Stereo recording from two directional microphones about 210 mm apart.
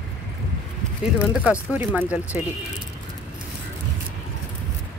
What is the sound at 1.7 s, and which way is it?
Speech, 5° right (ahead or behind).